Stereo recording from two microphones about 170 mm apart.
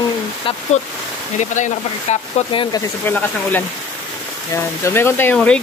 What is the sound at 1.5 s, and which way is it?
Speech, 45° left (ahead or behind).